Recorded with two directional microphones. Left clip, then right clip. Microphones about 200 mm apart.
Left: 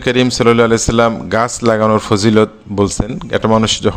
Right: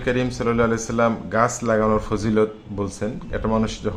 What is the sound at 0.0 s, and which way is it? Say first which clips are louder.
Speech: left 10 dB; 40° left (ahead or behind).